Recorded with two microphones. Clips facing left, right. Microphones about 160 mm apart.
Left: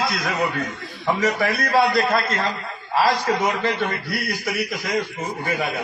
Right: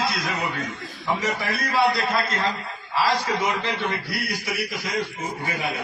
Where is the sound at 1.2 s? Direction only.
55° left (ahead or behind).